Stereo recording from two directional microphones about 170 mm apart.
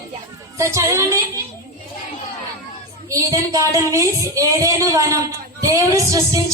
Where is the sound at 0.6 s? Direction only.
15° right (ahead or behind).